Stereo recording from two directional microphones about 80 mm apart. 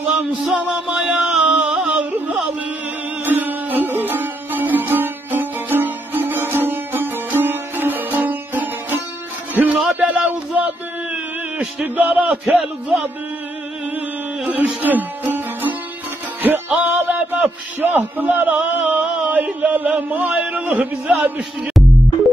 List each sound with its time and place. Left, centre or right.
0.1 s music: centre
9.9 s a sound: centre
11.8 s a man's voice: centre
14.8 s music: right
16.8 s a man's voice: right